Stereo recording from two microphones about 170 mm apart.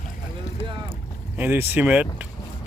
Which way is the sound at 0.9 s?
10° right (ahead or behind).